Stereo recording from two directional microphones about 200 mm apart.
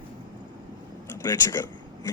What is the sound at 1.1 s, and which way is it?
Speech, 15° left (ahead or behind).